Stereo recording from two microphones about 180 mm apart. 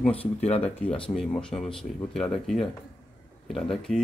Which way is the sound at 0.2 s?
35° left (ahead or behind).